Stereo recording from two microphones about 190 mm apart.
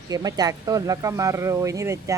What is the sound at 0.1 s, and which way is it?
Speech, 20° right (ahead or behind).